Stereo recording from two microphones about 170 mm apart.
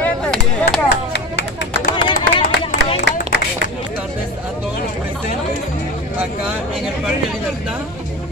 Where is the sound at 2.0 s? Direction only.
30° left (ahead or behind).